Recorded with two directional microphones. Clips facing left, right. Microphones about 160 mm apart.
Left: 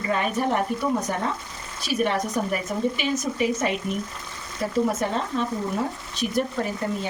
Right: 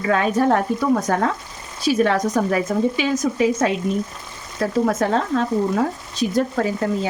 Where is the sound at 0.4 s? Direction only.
90° right.